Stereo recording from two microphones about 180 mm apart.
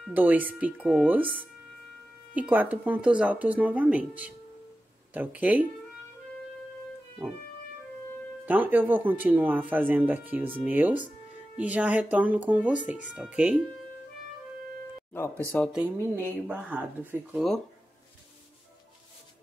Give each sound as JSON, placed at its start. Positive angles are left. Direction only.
{"t": 0.0, "sound": "speech", "side_deg": -10}
{"t": 8.5, "sound": "speech", "side_deg": -10}
{"t": 15.1, "sound": "speech", "side_deg": 15}
{"t": 16.4, "sound": "speech", "side_deg": -5}